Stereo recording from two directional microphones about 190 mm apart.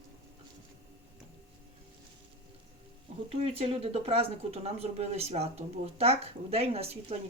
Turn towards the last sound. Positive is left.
turn(degrees=-30)  # may be behind; listen again after turning